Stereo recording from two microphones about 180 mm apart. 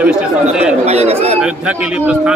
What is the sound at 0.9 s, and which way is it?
Speech, 35° right (ahead or behind).